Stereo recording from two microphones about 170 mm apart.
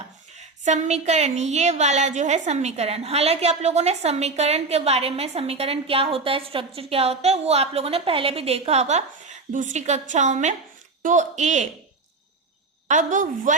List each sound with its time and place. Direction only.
0.3 s a woman's voice: 45° right (ahead or behind)
12.9 s speech: 45° right (ahead or behind)